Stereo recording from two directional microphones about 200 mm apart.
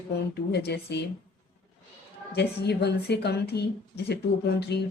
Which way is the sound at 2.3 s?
55° left (ahead or behind).